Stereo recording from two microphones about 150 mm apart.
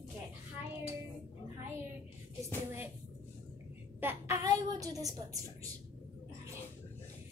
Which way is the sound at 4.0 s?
15° right (ahead or behind).